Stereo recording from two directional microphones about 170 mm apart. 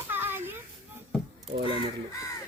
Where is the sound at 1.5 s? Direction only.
90° right.